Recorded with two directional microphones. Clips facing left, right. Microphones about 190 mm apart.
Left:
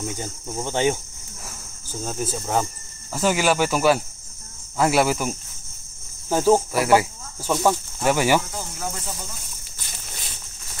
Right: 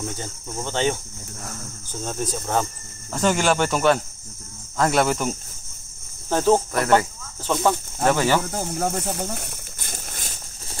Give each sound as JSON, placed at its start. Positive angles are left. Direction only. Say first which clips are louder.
{"t": 0.1, "sound": "speech", "louder": "left 2 dB", "side_deg": 10}
{"t": 8.5, "sound": "snake", "louder": "right 7 dB", "side_deg": -55}